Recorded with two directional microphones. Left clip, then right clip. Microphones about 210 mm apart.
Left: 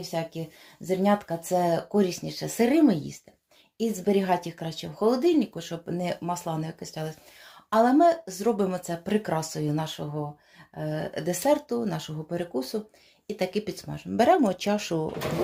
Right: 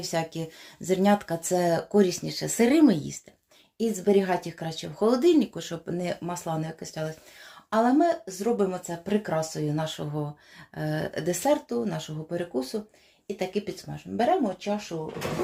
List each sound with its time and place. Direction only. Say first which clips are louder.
0.0 s speech: right 2 dB; 10° right (ahead or behind); by 9.9 s 10° left (ahead or behind)
10.8 s speech: right 1 dB; 10° right (ahead or behind); by 14.9 s 50° left (ahead or behind)